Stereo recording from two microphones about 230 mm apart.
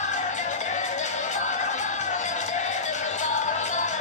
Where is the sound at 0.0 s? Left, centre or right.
Left.